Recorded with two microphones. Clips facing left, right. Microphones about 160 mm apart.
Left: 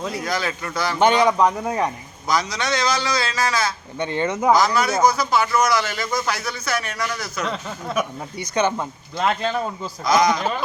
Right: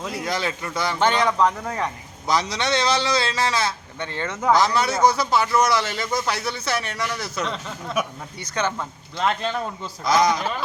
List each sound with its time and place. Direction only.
0.3 s a man's voice: 25° right (ahead or behind)
0.9 s speech: 15° left (ahead or behind)
2.2 s a man's voice: 30° right (ahead or behind)
3.9 s speech: 15° left (ahead or behind)
4.5 s a man's voice: 30° right (ahead or behind)
7.4 s speech: 5° left (ahead or behind)
9.2 s speech: 5° left (ahead or behind)